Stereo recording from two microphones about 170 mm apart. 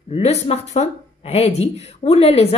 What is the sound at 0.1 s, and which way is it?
Speech, 35° left (ahead or behind).